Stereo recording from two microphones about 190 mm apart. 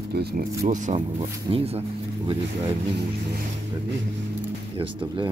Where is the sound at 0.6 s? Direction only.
35° right (ahead or behind).